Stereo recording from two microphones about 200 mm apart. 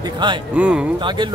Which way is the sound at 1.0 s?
25° right (ahead or behind).